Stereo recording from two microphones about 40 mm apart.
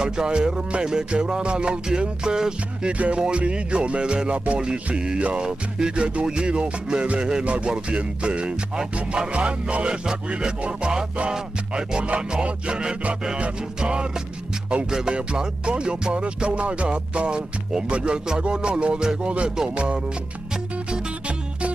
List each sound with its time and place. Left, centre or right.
0.0 s music: right
2.9 s music: right
11.7 s music: right